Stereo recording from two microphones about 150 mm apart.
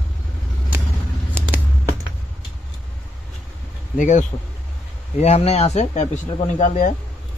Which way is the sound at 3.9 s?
55° left (ahead or behind).